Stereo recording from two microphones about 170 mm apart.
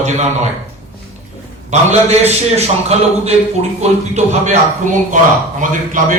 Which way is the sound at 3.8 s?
40° right (ahead or behind).